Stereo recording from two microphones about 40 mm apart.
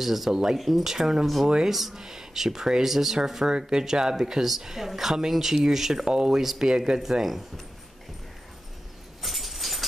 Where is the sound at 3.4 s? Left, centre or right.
Right.